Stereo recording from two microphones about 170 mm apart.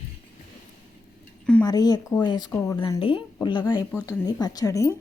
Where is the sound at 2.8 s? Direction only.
30° left (ahead or behind).